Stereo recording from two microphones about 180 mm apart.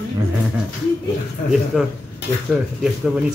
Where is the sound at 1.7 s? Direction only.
Centre (ahead or behind).